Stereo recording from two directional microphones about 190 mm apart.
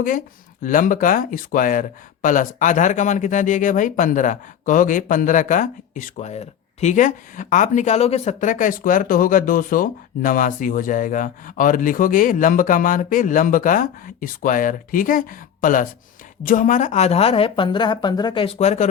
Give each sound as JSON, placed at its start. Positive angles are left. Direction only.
{"t": 0.6, "sound": "a woman's voice", "side_deg": 45}